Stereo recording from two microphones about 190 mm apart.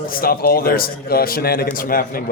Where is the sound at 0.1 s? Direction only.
50° left (ahead or behind).